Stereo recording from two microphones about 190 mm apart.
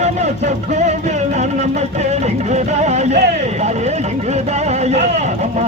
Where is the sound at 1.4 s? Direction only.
35° right (ahead or behind).